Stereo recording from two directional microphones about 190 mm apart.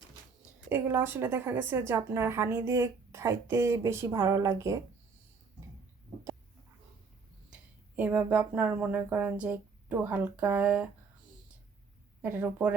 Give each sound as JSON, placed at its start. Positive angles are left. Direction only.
{"t": 0.7, "sound": "a woman's voice", "side_deg": -10}
{"t": 7.5, "sound": "speech", "side_deg": -10}
{"t": 12.2, "sound": "a woman's voice", "side_deg": -10}